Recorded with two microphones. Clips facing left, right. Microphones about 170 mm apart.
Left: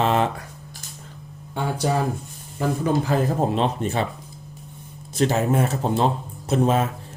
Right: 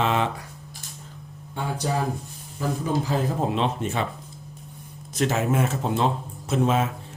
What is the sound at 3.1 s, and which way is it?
Speech, 45° left (ahead or behind).